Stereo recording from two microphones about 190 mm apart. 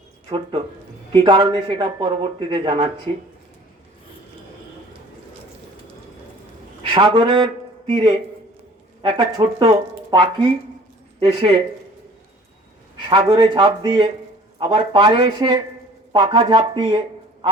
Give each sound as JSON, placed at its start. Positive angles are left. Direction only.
{"t": 0.3, "sound": "speech", "side_deg": -30}
{"t": 6.8, "sound": "speech", "side_deg": -25}
{"t": 13.1, "sound": "speech", "side_deg": -25}